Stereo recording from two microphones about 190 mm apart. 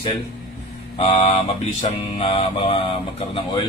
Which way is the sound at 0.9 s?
30° left (ahead or behind).